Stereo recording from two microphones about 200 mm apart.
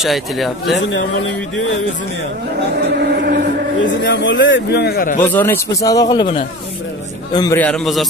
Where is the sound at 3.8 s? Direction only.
65° left (ahead or behind); by 5.2 s 45° left (ahead or behind).